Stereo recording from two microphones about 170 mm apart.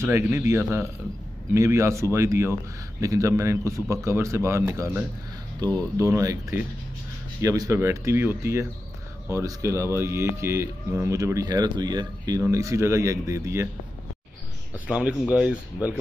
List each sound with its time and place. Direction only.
0.0 s speech: 15° right (ahead or behind)
14.9 s speech: 5° right (ahead or behind)